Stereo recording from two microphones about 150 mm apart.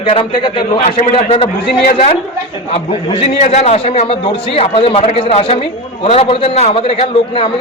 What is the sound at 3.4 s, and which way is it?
A man's voice, 50° left (ahead or behind).